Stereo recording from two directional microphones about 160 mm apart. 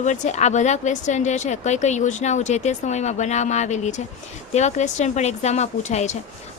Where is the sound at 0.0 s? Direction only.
50° left (ahead or behind).